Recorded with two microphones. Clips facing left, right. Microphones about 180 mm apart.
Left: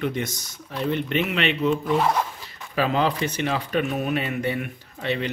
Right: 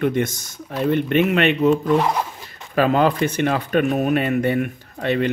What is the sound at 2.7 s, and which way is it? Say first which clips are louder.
Speech: right 5 dB; 50° right (ahead or behind).